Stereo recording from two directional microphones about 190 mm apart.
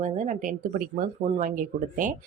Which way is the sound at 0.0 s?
40° right (ahead or behind).